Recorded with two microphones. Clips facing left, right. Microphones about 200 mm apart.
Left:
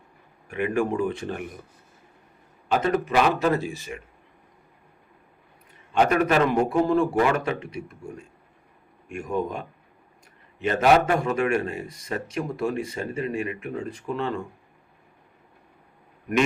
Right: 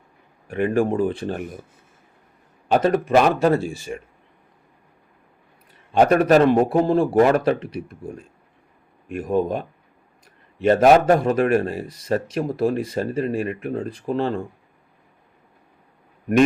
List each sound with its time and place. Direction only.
0.4 s speech: 30° right (ahead or behind)
2.6 s speech: 40° right (ahead or behind)
5.9 s speech: 35° right (ahead or behind)